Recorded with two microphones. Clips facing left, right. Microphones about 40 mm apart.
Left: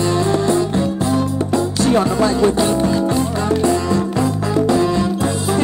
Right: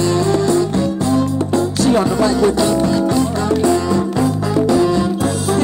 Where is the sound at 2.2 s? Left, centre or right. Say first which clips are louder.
Right 1 dB; left.